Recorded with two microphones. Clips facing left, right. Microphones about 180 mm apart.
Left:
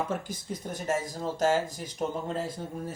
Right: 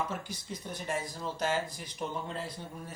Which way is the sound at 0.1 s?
50° left (ahead or behind).